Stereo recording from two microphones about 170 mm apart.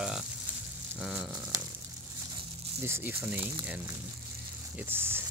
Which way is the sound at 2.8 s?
15° right (ahead or behind).